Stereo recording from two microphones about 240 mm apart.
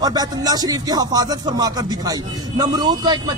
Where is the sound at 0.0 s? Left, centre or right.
Centre.